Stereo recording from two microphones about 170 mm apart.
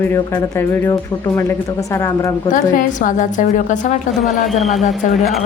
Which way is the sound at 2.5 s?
50° left (ahead or behind).